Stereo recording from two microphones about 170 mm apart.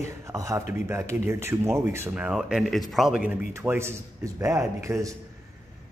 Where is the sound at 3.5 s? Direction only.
15° right (ahead or behind).